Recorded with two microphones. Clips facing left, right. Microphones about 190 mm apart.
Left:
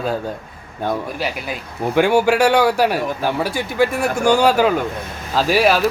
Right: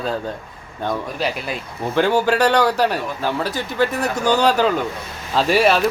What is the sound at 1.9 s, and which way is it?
A man's voice, 10° left (ahead or behind).